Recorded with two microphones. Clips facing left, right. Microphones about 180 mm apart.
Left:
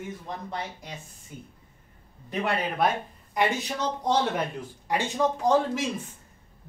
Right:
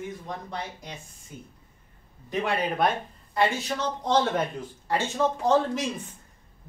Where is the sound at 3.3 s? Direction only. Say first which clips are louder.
Right 1 dB; 15° left (ahead or behind).